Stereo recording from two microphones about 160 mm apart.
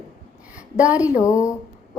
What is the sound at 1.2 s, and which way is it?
Speech, 20° left (ahead or behind).